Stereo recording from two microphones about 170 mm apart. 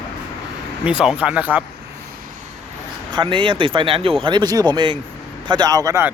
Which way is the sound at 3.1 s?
30° right (ahead or behind).